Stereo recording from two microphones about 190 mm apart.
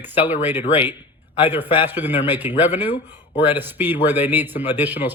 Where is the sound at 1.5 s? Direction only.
10° right (ahead or behind).